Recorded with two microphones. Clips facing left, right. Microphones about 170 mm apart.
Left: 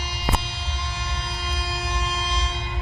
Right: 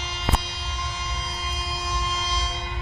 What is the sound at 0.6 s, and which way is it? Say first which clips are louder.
Music: even; 30° left (ahead or behind).